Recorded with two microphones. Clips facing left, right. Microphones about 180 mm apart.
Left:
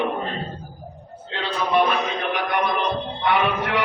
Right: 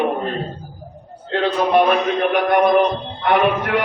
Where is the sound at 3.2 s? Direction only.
50° right (ahead or behind).